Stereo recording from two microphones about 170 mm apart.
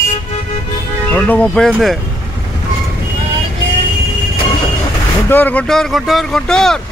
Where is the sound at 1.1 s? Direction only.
10° left (ahead or behind).